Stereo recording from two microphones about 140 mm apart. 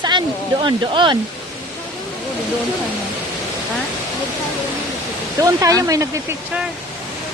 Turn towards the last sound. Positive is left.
turn(degrees=-25)  # may be behind; listen again after turning